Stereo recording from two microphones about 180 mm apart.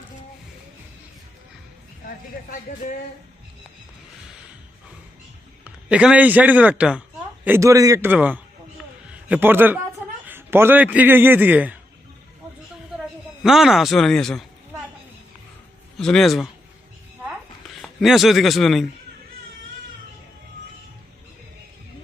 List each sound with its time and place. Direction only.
2.0 s speech: 50° left (ahead or behind)
5.6 s a man's voice: 5° right (ahead or behind)
13.4 s speech: centre (ahead or behind)
16.0 s speech: 5° left (ahead or behind)
17.8 s speech: centre (ahead or behind)